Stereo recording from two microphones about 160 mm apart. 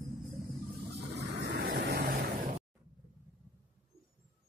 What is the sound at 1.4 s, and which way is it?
Vehicle, 90° right.